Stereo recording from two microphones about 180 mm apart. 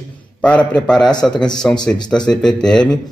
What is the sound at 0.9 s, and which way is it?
Speech, 25° left (ahead or behind).